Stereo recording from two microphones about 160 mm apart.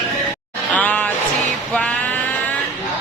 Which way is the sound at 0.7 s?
10° left (ahead or behind).